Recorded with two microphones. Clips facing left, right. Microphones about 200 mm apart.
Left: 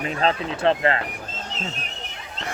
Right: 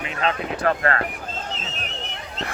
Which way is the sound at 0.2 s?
30° left (ahead or behind).